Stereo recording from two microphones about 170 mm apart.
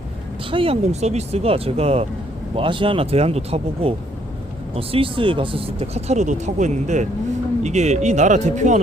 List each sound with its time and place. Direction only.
0.5 s speech: 35° right (ahead or behind)